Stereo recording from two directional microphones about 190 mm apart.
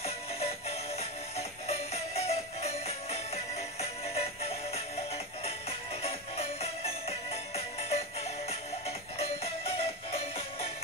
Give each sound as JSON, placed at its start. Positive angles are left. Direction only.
{"t": 0.0, "sound": "music", "side_deg": 30}